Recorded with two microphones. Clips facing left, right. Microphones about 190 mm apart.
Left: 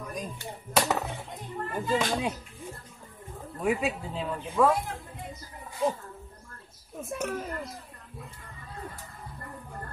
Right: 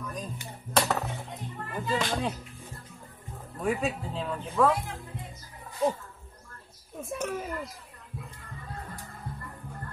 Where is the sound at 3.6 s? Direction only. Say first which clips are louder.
Left 1 dB; 5° left (ahead or behind).